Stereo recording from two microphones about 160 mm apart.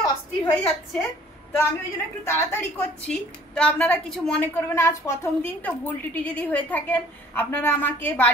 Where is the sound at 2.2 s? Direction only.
15° left (ahead or behind).